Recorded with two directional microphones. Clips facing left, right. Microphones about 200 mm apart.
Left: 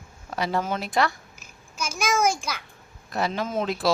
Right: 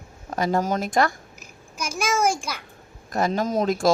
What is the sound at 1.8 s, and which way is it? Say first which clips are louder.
Speech: right 1 dB; 10° right (ahead or behind).